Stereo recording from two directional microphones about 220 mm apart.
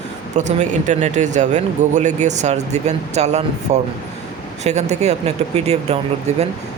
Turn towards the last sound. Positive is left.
turn(degrees=-30)  # may be behind; listen again after turning